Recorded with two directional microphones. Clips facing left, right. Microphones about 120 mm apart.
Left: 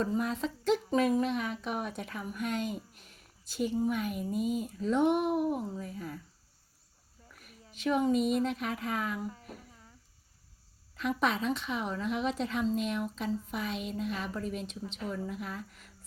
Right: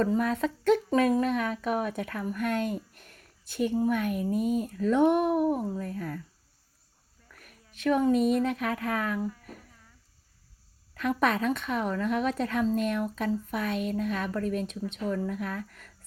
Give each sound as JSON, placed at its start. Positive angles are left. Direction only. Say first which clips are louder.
{"t": 0.0, "sound": "a woman's voice", "louder": "right 5 dB", "side_deg": -60}
{"t": 5.9, "sound": "speech", "louder": "right 5 dB", "side_deg": -60}
{"t": 7.7, "sound": "speech", "louder": "right 4 dB", "side_deg": -55}
{"t": 9.3, "sound": "cricket", "louder": "even", "side_deg": 25}
{"t": 10.9, "sound": "speech", "louder": "right 4 dB", "side_deg": -55}